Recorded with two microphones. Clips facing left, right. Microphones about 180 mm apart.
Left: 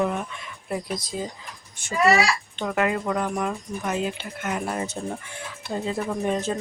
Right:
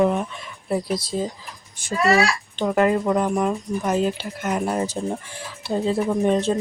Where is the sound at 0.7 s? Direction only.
30° right (ahead or behind).